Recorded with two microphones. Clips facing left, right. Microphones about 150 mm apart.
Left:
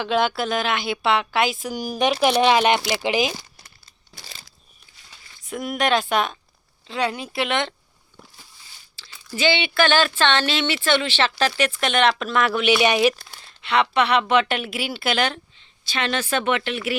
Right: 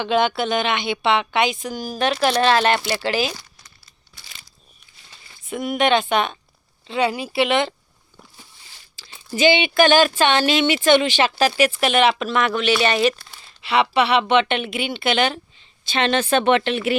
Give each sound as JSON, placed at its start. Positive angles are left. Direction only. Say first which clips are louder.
{"t": 0.0, "sound": "speech", "louder": "right 2 dB", "side_deg": 0}
{"t": 5.5, "sound": "speech", "louder": "right 3 dB", "side_deg": 0}
{"t": 9.0, "sound": "speech", "louder": "right 5 dB", "side_deg": -25}
{"t": 13.6, "sound": "speech", "louder": "right 2 dB", "side_deg": -5}
{"t": 15.9, "sound": "speech", "louder": "right 5 dB", "side_deg": -25}